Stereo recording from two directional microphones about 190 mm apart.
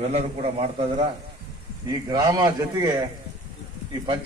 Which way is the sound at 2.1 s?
20° right (ahead or behind).